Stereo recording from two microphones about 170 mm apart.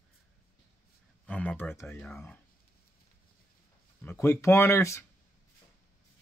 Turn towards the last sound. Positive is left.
turn(degrees=15)  # may be behind; listen again after turning